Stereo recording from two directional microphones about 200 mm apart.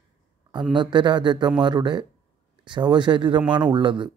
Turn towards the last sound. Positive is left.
turn(degrees=-25)  # may be behind; listen again after turning